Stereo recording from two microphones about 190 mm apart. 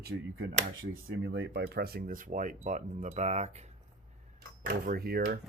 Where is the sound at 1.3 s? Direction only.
60° right (ahead or behind); by 3.6 s 35° right (ahead or behind).